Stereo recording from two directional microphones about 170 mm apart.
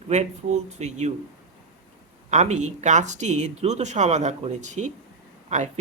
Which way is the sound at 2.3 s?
45° right (ahead or behind).